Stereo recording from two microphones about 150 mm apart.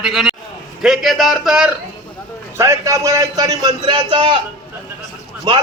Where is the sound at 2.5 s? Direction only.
20° right (ahead or behind).